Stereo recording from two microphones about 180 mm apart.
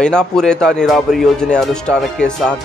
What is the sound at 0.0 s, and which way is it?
Speech, 5° left (ahead or behind).